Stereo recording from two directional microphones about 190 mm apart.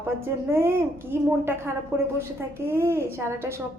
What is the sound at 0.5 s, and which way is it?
A woman's voice, 15° right (ahead or behind).